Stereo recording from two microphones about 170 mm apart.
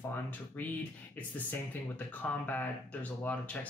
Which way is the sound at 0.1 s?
10° left (ahead or behind).